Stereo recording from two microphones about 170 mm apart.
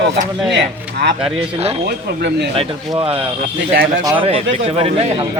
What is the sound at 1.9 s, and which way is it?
Speech, 75° right (ahead or behind).